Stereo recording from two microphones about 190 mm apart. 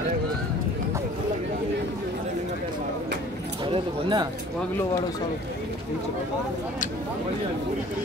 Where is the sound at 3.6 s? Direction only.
25° right (ahead or behind).